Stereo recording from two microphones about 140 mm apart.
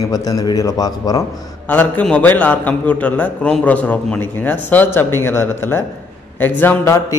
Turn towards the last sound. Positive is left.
turn(degrees=15)  # may be behind; listen again after turning